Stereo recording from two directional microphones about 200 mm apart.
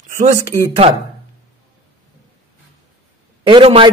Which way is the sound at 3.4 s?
25° right (ahead or behind).